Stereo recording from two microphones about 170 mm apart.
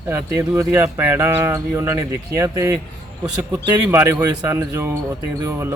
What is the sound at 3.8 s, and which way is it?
Speech, 15° right (ahead or behind).